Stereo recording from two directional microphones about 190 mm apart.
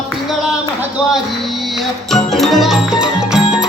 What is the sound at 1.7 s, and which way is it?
Music, centre (ahead or behind).